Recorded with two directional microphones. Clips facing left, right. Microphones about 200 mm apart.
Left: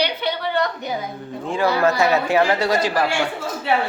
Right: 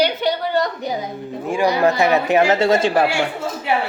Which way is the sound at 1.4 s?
15° right (ahead or behind).